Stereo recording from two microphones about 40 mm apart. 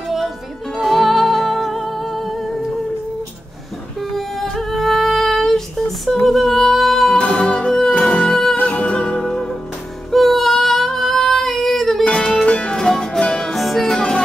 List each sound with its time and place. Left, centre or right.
0.7 s music: centre
4.4 s music: centre
6.2 s a sound: centre
7.2 s music: left
8.3 s music: centre
8.6 s music: left
10.1 s female singing: centre
12.0 s music: left
12.7 s music: centre
13.5 s music: centre
13.8 s music: centre